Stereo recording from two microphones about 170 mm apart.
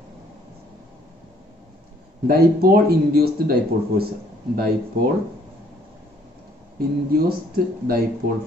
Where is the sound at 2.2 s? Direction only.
60° right (ahead or behind).